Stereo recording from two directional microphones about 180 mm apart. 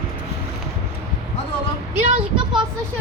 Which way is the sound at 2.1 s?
30° right (ahead or behind).